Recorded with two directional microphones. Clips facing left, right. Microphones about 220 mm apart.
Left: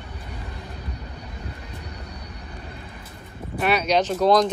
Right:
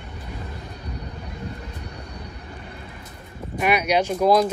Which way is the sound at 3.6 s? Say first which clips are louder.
Even; 10° right (ahead or behind).